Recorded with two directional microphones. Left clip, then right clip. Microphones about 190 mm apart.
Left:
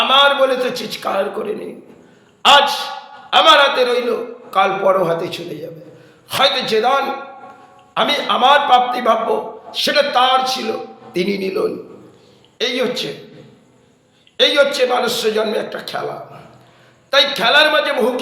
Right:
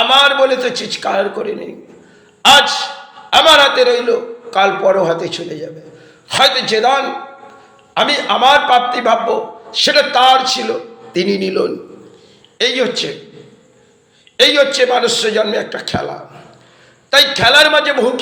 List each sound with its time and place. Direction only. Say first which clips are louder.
0.1 s a man's voice: right 1 dB; 15° right (ahead or behind)
14.3 s a man's voice: right 3 dB; 15° right (ahead or behind)
17.1 s a man's voice: right 4 dB; 15° right (ahead or behind)